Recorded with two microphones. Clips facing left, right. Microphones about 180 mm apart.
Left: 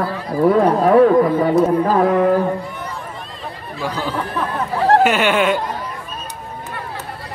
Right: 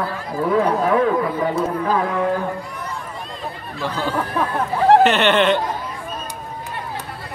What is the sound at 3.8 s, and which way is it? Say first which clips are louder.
Speech: even; 10° left (ahead or behind).